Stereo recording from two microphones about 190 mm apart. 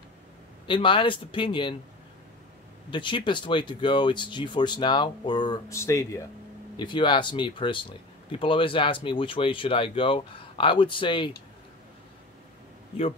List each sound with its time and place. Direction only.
0.7 s speech: 25° left (ahead or behind)
2.9 s speech: 25° left (ahead or behind)
12.9 s speech: 30° left (ahead or behind)